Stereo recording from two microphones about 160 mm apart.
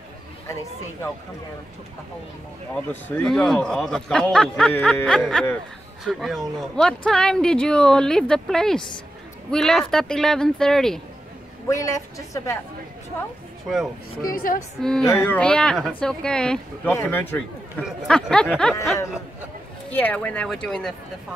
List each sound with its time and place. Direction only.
2.7 s speech: 10° left (ahead or behind)
11.6 s a woman's voice: 20° left (ahead or behind)
14.3 s a woman's voice: 60° left (ahead or behind)
14.8 s speech: 5° left (ahead or behind)
15.0 s speech: 15° left (ahead or behind)
19.9 s speech: 10° left (ahead or behind)